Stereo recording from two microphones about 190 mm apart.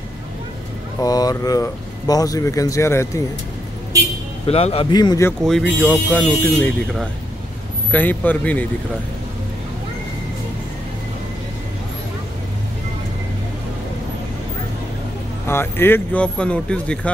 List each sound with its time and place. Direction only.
1.0 s speech: 20° left (ahead or behind)
4.5 s a man's voice: 30° left (ahead or behind)
5.4 s speech: centre (ahead or behind)
15.4 s speech: 10° left (ahead or behind)